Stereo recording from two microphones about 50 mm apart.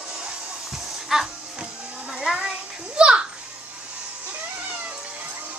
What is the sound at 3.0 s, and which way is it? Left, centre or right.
Children playing, right.